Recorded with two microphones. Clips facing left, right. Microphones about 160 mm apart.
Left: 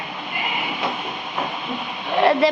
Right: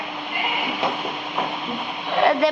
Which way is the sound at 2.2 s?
Centre (ahead or behind).